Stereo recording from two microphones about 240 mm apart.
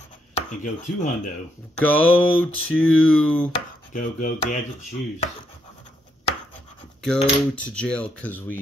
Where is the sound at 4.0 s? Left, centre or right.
Left.